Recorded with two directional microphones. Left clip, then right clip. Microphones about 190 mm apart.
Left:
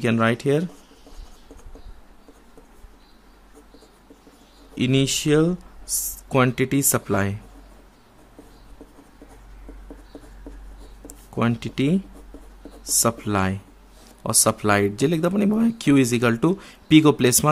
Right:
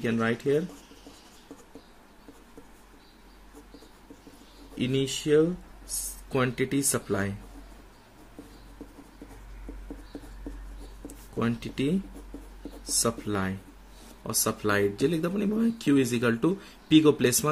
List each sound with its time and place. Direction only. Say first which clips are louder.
0.0 s speech: left 7 dB; 50° left (ahead or behind)
4.7 s speech: left 7 dB; 45° left (ahead or behind)
5.9 s speech: left 8 dB; 45° left (ahead or behind)
11.1 s speech: left 6 dB; 40° left (ahead or behind)